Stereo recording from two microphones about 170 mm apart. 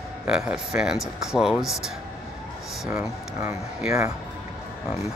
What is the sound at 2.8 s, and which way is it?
Speech, 15° right (ahead or behind).